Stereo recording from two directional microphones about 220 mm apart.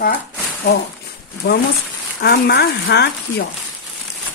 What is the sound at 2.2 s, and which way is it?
Speech, 45° left (ahead or behind).